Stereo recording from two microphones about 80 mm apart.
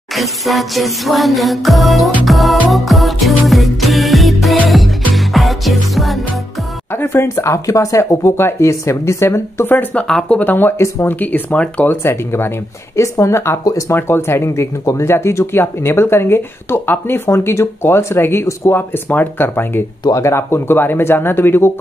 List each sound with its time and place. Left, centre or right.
0.1 s music: centre
7.0 s speech: left
10.0 s speech: centre; by 11.1 s left
11.1 s speech: centre
11.9 s speech: left
20.1 s speech: left